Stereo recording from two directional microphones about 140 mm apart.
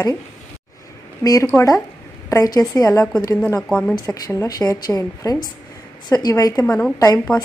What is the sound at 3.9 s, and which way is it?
A woman's voice, 25° left (ahead or behind).